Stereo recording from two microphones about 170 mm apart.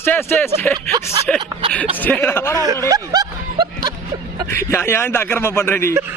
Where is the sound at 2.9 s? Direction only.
20° right (ahead or behind).